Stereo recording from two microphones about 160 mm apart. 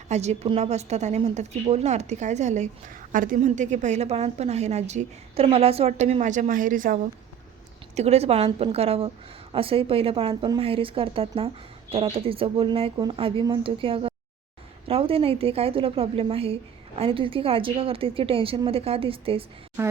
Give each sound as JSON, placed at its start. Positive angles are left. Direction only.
{"t": 0.1, "sound": "a woman's voice", "side_deg": -45}
{"t": 7.9, "sound": "a woman's voice", "side_deg": -40}